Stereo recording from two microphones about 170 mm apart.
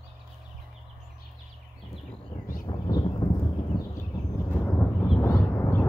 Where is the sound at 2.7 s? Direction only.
25° left (ahead or behind).